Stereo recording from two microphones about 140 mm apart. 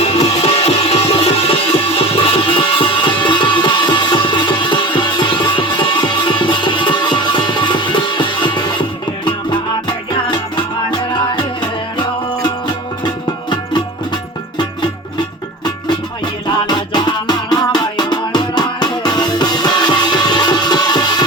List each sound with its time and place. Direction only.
0.0 s music: 45° left (ahead or behind)
16.6 s music: 30° left (ahead or behind)